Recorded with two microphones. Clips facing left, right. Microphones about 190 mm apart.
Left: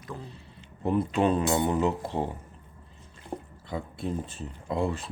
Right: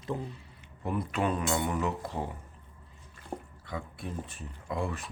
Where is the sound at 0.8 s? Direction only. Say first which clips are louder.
Left 6 dB; 25° left (ahead or behind).